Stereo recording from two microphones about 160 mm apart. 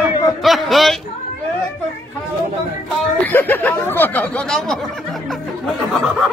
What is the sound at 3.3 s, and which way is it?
Speech, 10° left (ahead or behind).